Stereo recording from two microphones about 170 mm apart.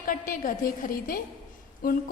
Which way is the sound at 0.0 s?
55° left (ahead or behind).